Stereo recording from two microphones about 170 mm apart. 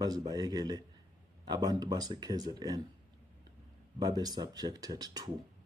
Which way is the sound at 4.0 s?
25° right (ahead or behind).